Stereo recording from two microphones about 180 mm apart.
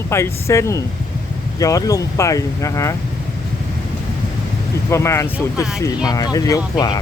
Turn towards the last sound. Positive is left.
turn(degrees=25)  # may be behind; listen again after turning